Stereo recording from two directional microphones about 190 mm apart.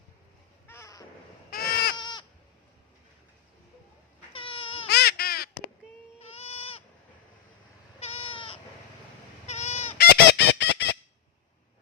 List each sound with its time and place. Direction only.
0.7 s crow: 15° left (ahead or behind)
1.5 s baby cry: 50° left (ahead or behind)
2.0 s goat: 25° left (ahead or behind)
4.3 s cat: 30° left (ahead or behind)
4.9 s duck: 60° left (ahead or behind)
6.1 s baby cry: 30° left (ahead or behind)
7.9 s cat: 30° left (ahead or behind)
9.5 s fowl: 35° left (ahead or behind)
10.0 s fowl: 60° left (ahead or behind)